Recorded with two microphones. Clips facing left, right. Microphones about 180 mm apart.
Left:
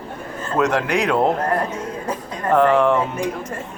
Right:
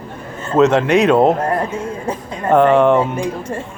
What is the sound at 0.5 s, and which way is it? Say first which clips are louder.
Speech: right 7 dB; 25° right (ahead or behind).